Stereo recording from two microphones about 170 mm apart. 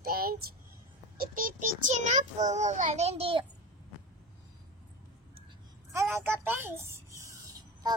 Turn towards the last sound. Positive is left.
turn(degrees=-20)  # may be behind; listen again after turning